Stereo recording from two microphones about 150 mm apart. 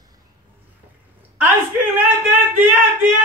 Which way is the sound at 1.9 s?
15° right (ahead or behind).